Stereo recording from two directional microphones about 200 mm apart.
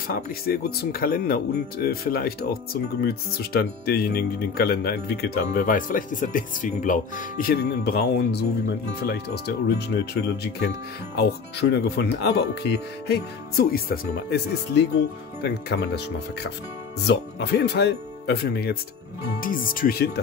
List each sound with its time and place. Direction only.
0.1 s speech: 50° left (ahead or behind)
11.7 s speech: 55° left (ahead or behind)
17.0 s speech: 55° left (ahead or behind)